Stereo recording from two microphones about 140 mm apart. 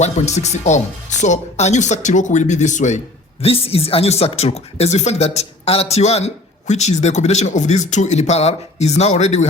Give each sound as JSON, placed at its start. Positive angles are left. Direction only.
{"t": 0.0, "sound": "speech", "side_deg": 55}
{"t": 3.4, "sound": "speech", "side_deg": 45}